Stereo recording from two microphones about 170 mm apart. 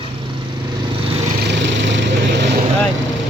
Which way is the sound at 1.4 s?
90° right.